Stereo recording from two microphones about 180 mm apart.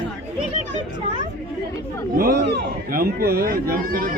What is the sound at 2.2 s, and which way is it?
Speech, 60° right (ahead or behind).